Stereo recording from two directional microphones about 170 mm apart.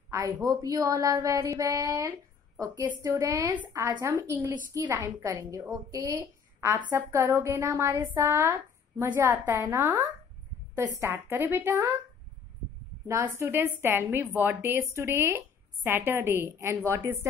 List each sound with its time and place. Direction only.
0.1 s a woman's voice: 20° right (ahead or behind)
13.1 s a woman's voice: 15° right (ahead or behind)